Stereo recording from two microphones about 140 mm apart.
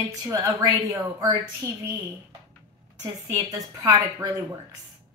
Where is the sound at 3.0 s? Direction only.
20° right (ahead or behind).